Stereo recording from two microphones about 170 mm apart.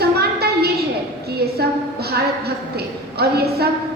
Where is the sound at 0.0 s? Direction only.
70° right (ahead or behind).